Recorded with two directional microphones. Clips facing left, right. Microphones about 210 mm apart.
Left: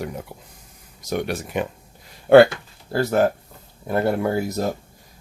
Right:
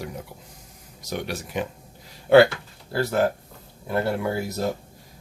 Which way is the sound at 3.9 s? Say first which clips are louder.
Left 4 dB; 45° left (ahead or behind).